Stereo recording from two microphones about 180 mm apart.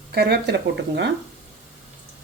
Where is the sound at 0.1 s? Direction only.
65° right (ahead or behind).